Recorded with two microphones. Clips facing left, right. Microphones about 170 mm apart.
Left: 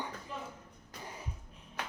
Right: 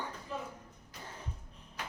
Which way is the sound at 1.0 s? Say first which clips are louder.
Left 2 dB; 10° left (ahead or behind).